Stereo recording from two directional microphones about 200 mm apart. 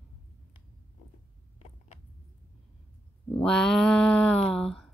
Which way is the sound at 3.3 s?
5° left (ahead or behind).